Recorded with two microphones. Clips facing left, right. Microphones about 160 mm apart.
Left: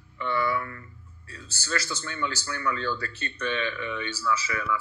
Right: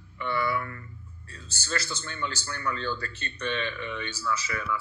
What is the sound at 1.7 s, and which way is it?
A man's voice, 30° right (ahead or behind).